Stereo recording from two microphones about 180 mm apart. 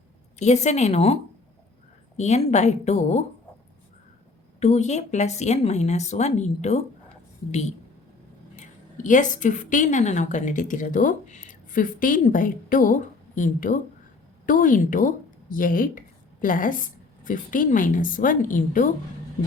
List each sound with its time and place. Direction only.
0.3 s speech: 40° left (ahead or behind)
4.6 s speech: 40° left (ahead or behind)
8.5 s a woman's voice: 45° left (ahead or behind)